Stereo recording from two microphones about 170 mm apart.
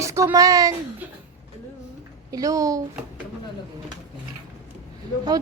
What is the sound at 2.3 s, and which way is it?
Speech, 20° right (ahead or behind).